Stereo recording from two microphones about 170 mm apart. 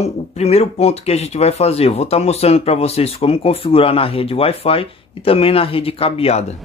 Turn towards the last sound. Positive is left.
turn(degrees=35)  # may be behind; listen again after turning